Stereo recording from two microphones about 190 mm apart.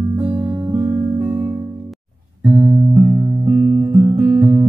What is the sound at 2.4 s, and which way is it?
Music, 10° right (ahead or behind).